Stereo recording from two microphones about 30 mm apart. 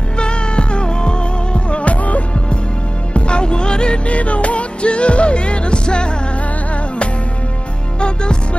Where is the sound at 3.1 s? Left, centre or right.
Left.